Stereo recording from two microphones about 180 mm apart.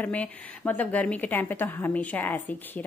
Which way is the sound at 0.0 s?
10° left (ahead or behind).